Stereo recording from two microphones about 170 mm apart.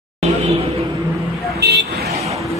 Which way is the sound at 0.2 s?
35° right (ahead or behind).